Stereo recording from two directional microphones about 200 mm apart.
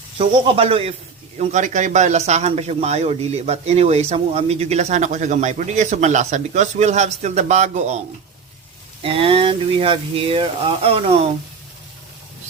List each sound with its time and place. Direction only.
0.2 s speech: 25° right (ahead or behind)
9.0 s speech: 30° right (ahead or behind)